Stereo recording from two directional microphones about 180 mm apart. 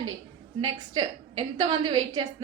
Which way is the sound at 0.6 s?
25° right (ahead or behind).